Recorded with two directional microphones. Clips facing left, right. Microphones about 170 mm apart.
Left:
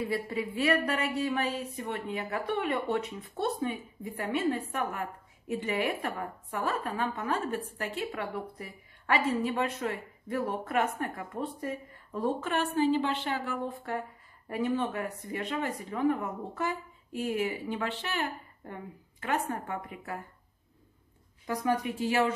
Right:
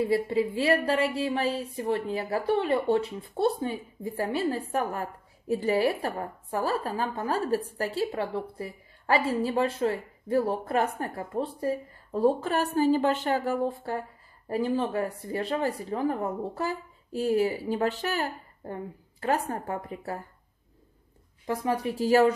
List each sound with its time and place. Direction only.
0.0 s a woman's voice: 30° right (ahead or behind)
21.5 s a woman's voice: 35° right (ahead or behind)